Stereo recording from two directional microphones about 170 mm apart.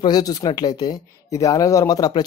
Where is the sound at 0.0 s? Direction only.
25° left (ahead or behind).